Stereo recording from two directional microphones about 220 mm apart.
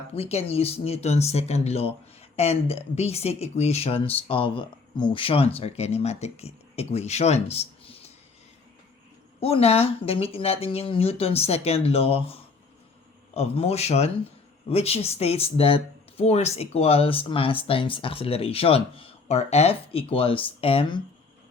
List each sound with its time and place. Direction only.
0.1 s speech: 25° left (ahead or behind)
9.4 s speech: 25° left (ahead or behind)